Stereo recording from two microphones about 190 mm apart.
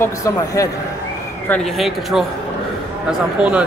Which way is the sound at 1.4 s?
5° left (ahead or behind).